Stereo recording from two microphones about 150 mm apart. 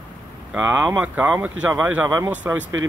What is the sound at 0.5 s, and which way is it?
A man's voice, 10° right (ahead or behind).